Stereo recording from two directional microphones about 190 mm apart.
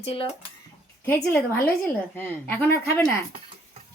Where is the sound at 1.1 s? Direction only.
10° left (ahead or behind).